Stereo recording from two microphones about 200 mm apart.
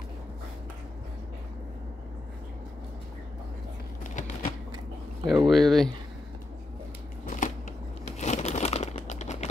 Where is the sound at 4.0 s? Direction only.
40° left (ahead or behind).